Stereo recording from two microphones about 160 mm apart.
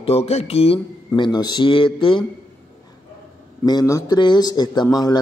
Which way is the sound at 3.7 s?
25° left (ahead or behind).